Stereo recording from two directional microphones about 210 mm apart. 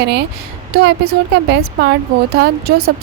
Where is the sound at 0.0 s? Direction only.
50° right (ahead or behind).